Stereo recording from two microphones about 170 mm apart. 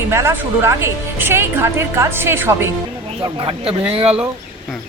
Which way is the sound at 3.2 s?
30° right (ahead or behind).